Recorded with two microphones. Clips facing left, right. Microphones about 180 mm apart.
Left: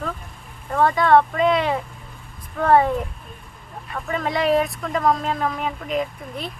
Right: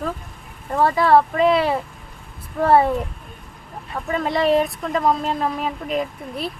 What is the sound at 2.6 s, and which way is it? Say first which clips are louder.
Speech: right 1 dB; 30° right (ahead or behind).